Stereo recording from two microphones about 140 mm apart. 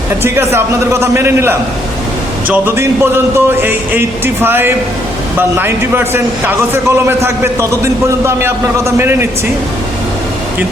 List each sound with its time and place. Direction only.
0.2 s a man's voice: 15° right (ahead or behind)